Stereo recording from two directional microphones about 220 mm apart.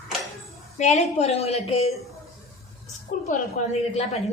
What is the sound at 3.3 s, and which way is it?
A woman's voice, 30° left (ahead or behind).